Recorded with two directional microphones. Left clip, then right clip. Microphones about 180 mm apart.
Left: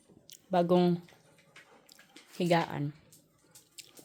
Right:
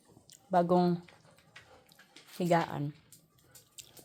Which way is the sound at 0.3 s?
20° left (ahead or behind).